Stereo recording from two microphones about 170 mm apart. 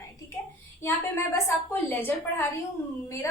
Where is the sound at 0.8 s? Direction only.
15° left (ahead or behind).